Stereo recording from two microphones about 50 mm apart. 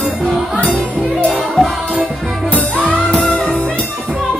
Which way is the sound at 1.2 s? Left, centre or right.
Centre.